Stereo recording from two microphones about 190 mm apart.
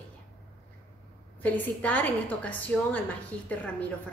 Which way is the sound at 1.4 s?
10° left (ahead or behind).